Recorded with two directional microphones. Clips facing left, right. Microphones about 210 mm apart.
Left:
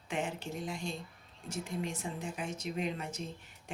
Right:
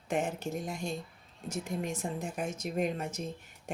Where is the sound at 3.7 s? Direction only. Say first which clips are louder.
Right 6 dB; 45° right (ahead or behind).